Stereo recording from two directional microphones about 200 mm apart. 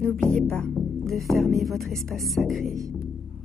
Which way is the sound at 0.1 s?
5° left (ahead or behind).